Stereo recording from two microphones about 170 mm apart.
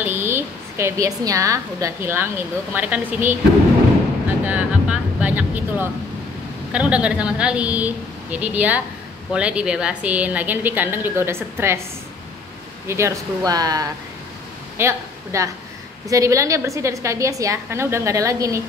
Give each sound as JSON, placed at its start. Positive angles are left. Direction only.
{"t": 0.0, "sound": "a woman's voice", "side_deg": -15}
{"t": 4.5, "sound": "vehicle", "side_deg": -10}
{"t": 6.7, "sound": "a woman's voice", "side_deg": -5}
{"t": 12.8, "sound": "a woman's voice", "side_deg": -15}